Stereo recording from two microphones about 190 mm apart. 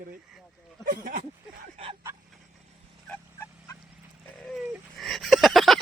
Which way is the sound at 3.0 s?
10° left (ahead or behind).